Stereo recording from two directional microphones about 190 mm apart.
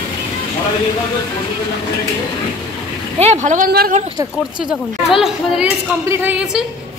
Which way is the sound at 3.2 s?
35° right (ahead or behind).